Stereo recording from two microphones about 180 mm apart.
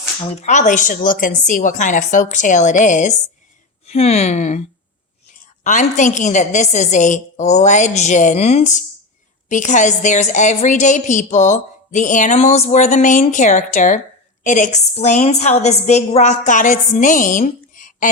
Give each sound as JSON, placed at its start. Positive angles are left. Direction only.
{"t": 0.2, "sound": "a woman's voice", "side_deg": 40}